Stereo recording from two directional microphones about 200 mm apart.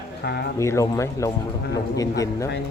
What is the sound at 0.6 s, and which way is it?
Speech, 15° left (ahead or behind).